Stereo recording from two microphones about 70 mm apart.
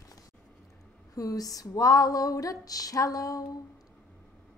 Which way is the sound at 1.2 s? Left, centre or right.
Left.